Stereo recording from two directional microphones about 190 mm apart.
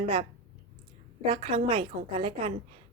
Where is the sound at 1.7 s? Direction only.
30° right (ahead or behind).